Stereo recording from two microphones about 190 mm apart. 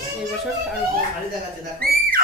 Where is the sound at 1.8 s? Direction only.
50° right (ahead or behind).